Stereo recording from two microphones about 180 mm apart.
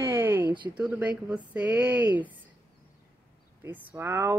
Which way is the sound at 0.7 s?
10° right (ahead or behind).